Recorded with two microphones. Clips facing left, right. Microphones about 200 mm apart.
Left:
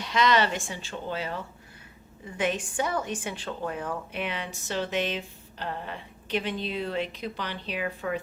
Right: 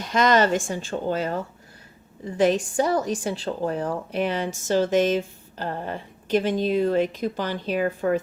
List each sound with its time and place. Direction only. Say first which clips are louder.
0.0 s a woman's voice: right 4 dB; 45° right (ahead or behind)